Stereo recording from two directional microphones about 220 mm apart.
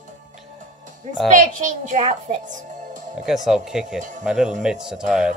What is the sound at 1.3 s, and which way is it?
Speech, 35° right (ahead or behind).